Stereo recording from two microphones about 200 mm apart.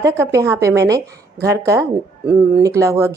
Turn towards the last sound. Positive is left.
turn(degrees=-15)  # may be behind; listen again after turning